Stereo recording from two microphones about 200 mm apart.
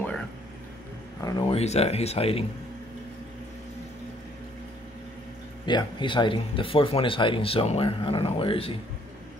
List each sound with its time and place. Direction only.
1.2 s speech: 25° left (ahead or behind)
5.7 s speech: 20° left (ahead or behind)